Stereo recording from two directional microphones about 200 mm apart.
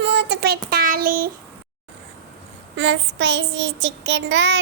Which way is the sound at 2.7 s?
65° right (ahead or behind).